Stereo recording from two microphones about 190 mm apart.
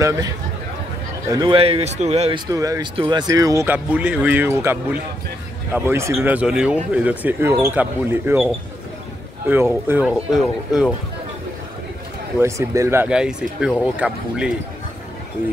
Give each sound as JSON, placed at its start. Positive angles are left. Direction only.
{"t": 0.0, "sound": "speech", "side_deg": -15}
{"t": 1.3, "sound": "speech", "side_deg": -25}
{"t": 2.5, "sound": "speech", "side_deg": -20}
{"t": 9.5, "sound": "speech", "side_deg": -10}
{"t": 12.4, "sound": "speech", "side_deg": -15}